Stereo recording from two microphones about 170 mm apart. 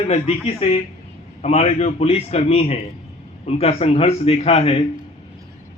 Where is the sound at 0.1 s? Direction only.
40° left (ahead or behind).